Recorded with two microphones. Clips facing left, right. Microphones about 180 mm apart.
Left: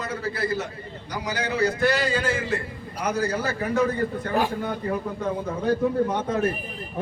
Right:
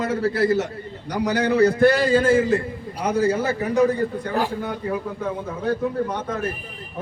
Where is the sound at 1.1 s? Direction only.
65° right (ahead or behind); by 2.5 s 50° right (ahead or behind).